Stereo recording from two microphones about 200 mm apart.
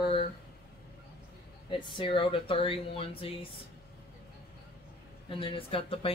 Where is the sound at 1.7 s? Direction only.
25° left (ahead or behind).